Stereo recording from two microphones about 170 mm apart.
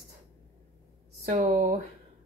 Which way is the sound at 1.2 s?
45° right (ahead or behind).